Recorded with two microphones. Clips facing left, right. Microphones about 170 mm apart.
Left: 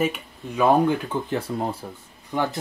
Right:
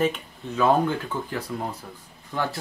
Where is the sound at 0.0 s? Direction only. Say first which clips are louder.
Even; 10° left (ahead or behind); by 1.9 s 30° left (ahead or behind).